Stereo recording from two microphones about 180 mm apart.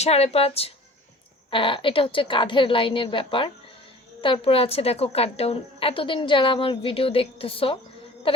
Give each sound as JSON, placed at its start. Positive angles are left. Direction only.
{"t": 0.0, "sound": "a woman's voice", "side_deg": 35}